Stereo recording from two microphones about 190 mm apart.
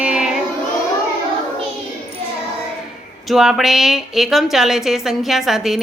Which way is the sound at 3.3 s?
Centre (ahead or behind).